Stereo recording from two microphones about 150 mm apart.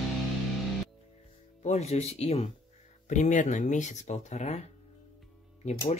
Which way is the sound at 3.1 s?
55° left (ahead or behind).